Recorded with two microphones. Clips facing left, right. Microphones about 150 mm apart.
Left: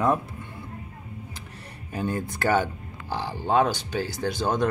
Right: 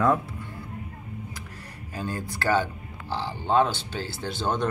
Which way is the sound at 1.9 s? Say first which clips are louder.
Left 4 dB; 20° left (ahead or behind).